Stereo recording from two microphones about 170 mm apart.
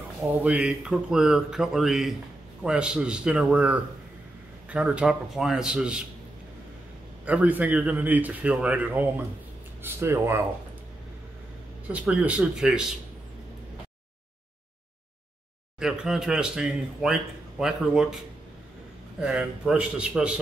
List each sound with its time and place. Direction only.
0.2 s speech: 5° right (ahead or behind)
7.2 s a man's voice: 10° right (ahead or behind)
11.9 s a man's voice: 5° right (ahead or behind)
15.8 s speech: 5° right (ahead or behind)